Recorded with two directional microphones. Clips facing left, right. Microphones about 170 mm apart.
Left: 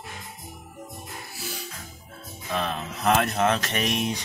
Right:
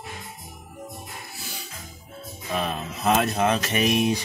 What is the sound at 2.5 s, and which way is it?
Music, 10° right (ahead or behind).